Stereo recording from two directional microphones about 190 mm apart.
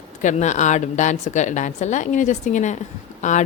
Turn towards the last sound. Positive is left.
turn(degrees=40)  # may be behind; listen again after turning